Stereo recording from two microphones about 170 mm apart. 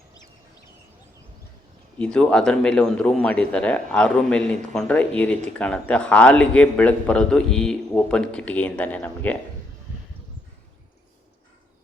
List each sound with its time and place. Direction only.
2.0 s speech: 5° left (ahead or behind)